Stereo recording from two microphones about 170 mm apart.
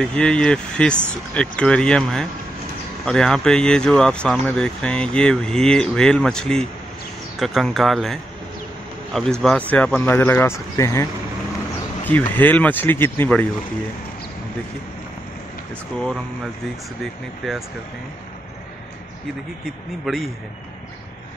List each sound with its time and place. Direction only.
0.0 s speech: 5° left (ahead or behind)
12.1 s speech: 10° left (ahead or behind)
17.0 s speech: centre (ahead or behind)
20.1 s speech: centre (ahead or behind)